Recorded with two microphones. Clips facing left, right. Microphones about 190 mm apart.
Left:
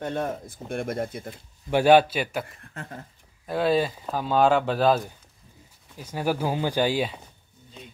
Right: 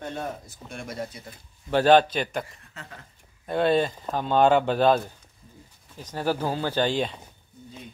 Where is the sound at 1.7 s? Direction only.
10° left (ahead or behind).